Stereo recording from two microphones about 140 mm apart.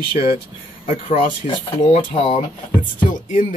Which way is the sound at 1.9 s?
45° left (ahead or behind).